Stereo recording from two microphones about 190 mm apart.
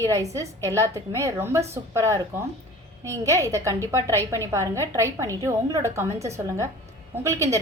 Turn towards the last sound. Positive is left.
turn(degrees=-15)  # may be behind; listen again after turning